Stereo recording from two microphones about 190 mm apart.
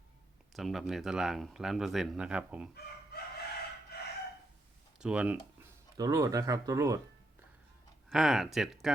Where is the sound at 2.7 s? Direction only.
55° left (ahead or behind).